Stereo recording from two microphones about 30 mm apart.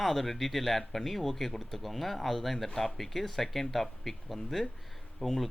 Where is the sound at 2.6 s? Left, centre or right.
Centre.